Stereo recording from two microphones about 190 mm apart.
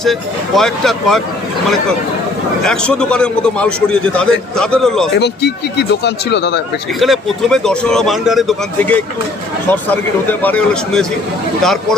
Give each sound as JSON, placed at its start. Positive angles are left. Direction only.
{"t": 0.0, "sound": "a man's voice", "side_deg": 0}
{"t": 2.6, "sound": "a man's voice", "side_deg": 5}
{"t": 5.1, "sound": "speech", "side_deg": 60}
{"t": 7.0, "sound": "a man's voice", "side_deg": 0}